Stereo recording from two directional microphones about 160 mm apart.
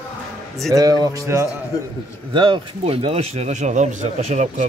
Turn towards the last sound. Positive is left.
turn(degrees=-45)  # may be behind; listen again after turning